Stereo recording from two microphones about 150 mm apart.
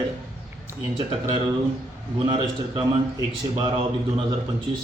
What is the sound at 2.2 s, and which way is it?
A man's voice, 30° right (ahead or behind).